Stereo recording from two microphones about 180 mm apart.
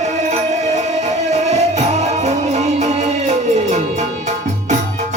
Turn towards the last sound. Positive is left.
turn(degrees=-40)  # may be behind; listen again after turning